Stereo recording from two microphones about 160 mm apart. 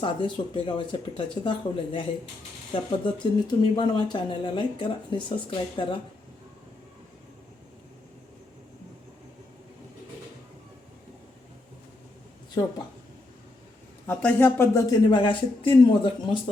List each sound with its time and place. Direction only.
0.0 s speech: 30° left (ahead or behind)
12.6 s speech: 30° left (ahead or behind)
14.1 s speech: 10° left (ahead or behind); by 16.4 s 30° left (ahead or behind)